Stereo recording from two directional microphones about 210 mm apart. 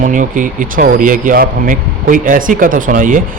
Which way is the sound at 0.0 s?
40° right (ahead or behind).